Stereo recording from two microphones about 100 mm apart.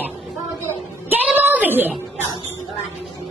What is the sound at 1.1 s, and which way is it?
Child singing, 20° right (ahead or behind).